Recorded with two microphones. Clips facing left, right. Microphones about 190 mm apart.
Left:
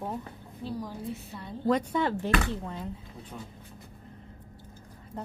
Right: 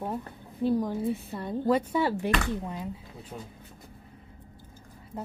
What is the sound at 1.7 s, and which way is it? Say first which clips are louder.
Speech: right 1 dB; 10° right (ahead or behind).